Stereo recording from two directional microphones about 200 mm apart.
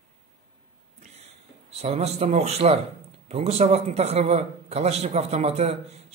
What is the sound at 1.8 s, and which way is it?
A man's voice, 30° right (ahead or behind).